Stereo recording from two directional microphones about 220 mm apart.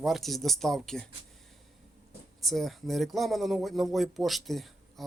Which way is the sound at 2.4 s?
Centre (ahead or behind).